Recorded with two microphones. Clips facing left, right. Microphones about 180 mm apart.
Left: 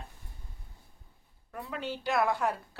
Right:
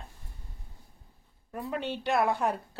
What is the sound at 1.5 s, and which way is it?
Speech, 20° right (ahead or behind).